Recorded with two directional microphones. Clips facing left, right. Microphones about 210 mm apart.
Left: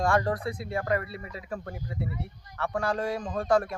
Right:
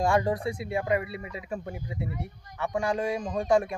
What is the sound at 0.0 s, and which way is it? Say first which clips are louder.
Speech: right 1 dB; 15° right (ahead or behind).